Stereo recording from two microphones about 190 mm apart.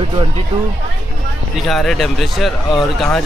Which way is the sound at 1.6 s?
Centre (ahead or behind).